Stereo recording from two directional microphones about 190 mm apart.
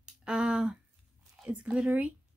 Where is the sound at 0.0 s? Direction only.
5° right (ahead or behind).